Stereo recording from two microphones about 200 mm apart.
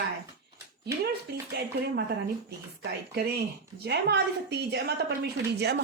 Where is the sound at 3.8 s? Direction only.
55° right (ahead or behind).